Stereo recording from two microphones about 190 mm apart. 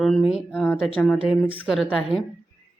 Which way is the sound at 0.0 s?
Centre (ahead or behind).